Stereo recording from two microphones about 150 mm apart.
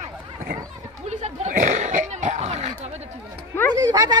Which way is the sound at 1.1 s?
50° right (ahead or behind).